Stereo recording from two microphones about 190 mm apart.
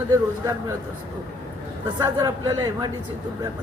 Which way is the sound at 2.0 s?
20° right (ahead or behind).